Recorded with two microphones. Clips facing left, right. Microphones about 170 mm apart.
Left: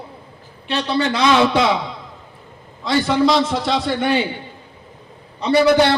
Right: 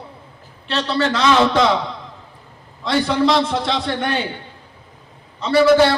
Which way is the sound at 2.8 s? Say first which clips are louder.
Left 1 dB; centre (ahead or behind).